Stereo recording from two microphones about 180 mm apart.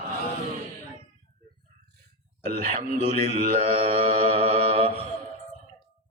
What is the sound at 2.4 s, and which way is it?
A man's voice, 50° right (ahead or behind).